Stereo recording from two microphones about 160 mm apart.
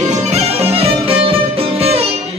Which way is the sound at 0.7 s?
35° right (ahead or behind).